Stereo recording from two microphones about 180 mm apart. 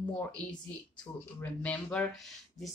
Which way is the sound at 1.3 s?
10° left (ahead or behind).